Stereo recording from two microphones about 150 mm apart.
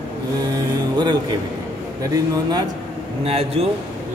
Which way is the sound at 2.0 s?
25° right (ahead or behind).